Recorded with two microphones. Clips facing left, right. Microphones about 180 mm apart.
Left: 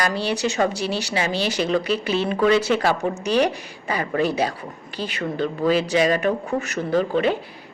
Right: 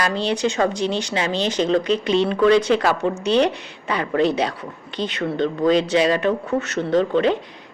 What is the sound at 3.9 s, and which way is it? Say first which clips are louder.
Speech: right 2 dB; 65° right (ahead or behind).